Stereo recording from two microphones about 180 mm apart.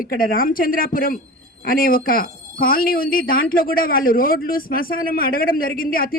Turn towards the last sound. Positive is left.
turn(degrees=55)  # may be behind; listen again after turning